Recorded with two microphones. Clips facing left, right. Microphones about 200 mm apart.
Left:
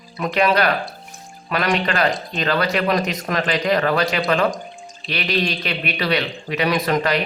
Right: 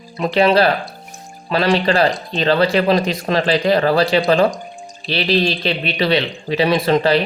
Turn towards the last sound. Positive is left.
turn(degrees=-30)  # may be behind; listen again after turning